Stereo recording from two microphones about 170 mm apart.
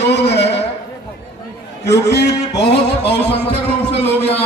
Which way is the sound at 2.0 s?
80° left.